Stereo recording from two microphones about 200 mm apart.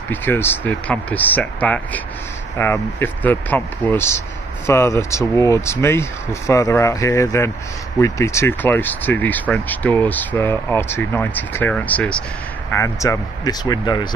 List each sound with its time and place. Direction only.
0.1 s speech: 10° left (ahead or behind)